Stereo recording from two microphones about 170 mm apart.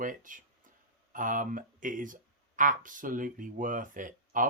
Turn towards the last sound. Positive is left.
turn(degrees=-50)  # may be behind; listen again after turning